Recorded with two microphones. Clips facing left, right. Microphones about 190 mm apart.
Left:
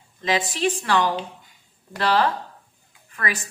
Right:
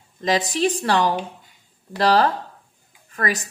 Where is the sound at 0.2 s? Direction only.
40° right (ahead or behind).